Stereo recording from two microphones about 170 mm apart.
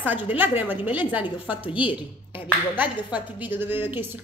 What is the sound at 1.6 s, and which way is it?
Speech, 30° left (ahead or behind).